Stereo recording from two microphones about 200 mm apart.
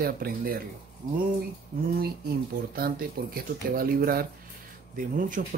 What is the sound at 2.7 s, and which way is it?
Speech, 45° right (ahead or behind).